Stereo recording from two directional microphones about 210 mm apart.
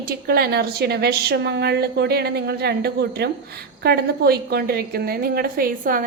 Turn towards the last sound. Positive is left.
turn(degrees=-45)  # may be behind; listen again after turning